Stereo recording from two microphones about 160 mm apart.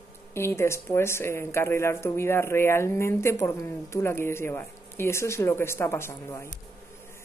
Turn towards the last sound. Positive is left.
turn(degrees=15)  # may be behind; listen again after turning